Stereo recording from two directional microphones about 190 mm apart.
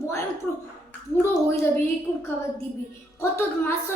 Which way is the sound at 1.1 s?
10° left (ahead or behind).